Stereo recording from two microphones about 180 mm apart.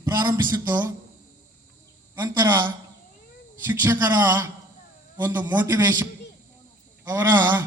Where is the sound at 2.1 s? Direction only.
25° right (ahead or behind).